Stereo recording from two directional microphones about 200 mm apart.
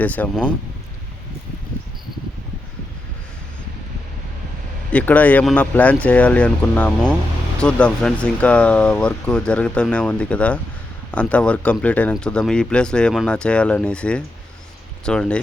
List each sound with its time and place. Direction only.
0.0 s speech: 10° left (ahead or behind)
4.9 s speech: 5° left (ahead or behind)